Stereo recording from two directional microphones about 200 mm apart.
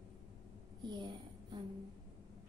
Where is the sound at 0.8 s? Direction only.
20° right (ahead or behind).